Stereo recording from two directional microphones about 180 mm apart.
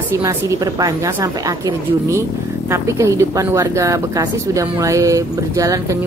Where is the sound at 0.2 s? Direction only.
15° right (ahead or behind).